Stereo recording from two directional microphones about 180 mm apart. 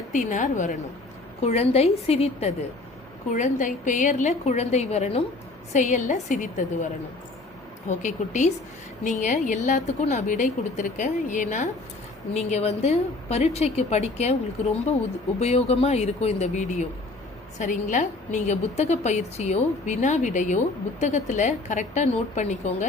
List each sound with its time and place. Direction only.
0.1 s a woman's voice: 45° left (ahead or behind)
3.3 s a woman's voice: 45° left (ahead or behind)
7.9 s a woman's voice: 40° left (ahead or behind)
15.4 s a woman's voice: 35° left (ahead or behind)